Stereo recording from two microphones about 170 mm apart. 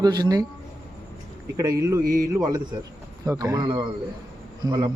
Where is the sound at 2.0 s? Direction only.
55° right (ahead or behind).